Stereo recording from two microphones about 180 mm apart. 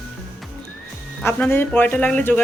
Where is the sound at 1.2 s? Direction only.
15° left (ahead or behind).